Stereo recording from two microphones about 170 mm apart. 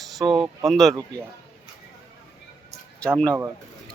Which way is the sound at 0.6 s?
Centre (ahead or behind).